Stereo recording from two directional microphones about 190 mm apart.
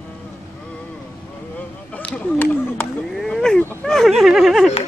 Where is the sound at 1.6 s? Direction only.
10° left (ahead or behind).